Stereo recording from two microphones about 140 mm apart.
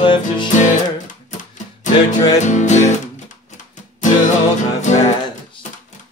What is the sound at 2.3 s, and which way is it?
Music, 60° left (ahead or behind).